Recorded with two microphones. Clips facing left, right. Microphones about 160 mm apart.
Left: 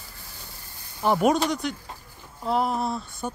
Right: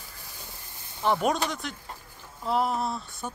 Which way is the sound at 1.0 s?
5° left (ahead or behind).